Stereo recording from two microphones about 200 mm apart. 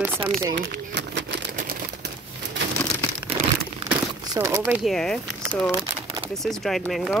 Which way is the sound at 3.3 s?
10° right (ahead or behind).